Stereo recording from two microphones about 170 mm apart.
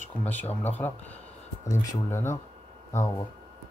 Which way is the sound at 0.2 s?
10° left (ahead or behind).